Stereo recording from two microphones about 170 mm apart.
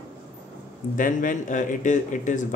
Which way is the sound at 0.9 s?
50° left (ahead or behind).